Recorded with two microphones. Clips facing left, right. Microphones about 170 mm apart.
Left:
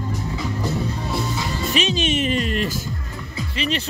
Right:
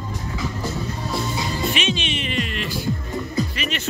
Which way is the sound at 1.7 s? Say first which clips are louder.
Left 3 dB; 40° left (ahead or behind).